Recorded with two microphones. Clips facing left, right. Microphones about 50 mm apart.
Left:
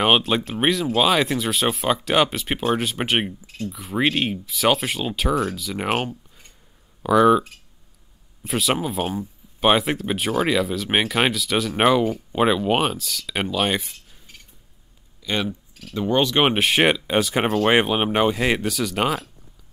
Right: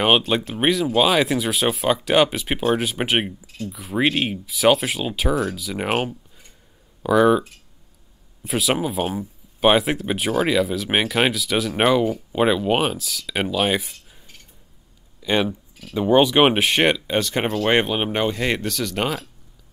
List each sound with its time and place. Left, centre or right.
0.0 s speech: centre
8.5 s speech: centre
15.2 s speech: centre